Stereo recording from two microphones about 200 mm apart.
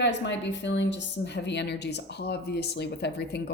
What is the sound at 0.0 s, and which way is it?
A woman's voice, 60° left (ahead or behind).